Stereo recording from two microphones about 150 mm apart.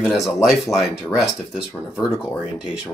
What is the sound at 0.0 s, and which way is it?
Speech, centre (ahead or behind).